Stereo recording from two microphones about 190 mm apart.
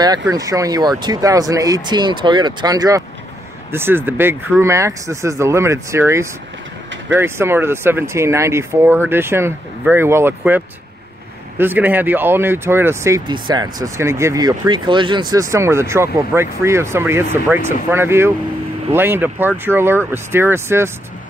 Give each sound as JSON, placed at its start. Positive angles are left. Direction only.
{"t": 0.3, "sound": "speech", "side_deg": -20}